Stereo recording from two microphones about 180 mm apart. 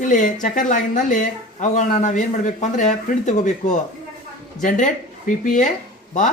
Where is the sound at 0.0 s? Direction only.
45° left (ahead or behind).